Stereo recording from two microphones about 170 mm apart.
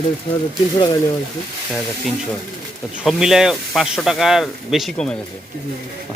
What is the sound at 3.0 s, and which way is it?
Speech, centre (ahead or behind).